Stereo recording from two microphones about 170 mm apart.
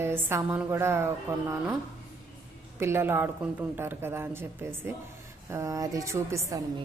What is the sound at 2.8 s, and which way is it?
A woman's voice, 15° right (ahead or behind).